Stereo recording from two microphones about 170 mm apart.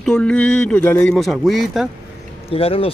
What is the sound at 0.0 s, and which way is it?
A man's voice, 5° left (ahead or behind).